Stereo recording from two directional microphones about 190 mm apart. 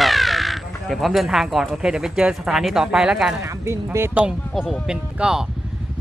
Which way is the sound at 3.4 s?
15° right (ahead or behind).